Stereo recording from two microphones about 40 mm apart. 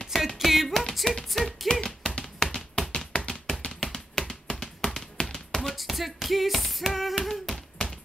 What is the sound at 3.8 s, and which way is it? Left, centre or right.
Tap, centre.